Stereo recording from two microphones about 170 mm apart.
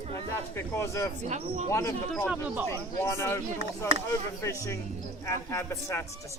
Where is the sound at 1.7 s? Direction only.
15° left (ahead or behind).